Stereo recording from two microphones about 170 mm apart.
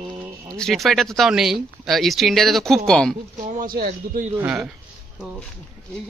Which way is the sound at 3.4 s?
55° right (ahead or behind).